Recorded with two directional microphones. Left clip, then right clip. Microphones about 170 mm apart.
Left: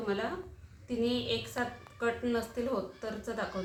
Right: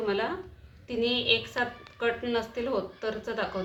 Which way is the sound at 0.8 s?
45° right (ahead or behind).